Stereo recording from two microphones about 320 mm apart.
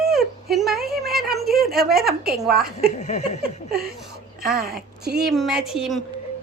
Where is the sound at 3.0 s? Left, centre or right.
Left.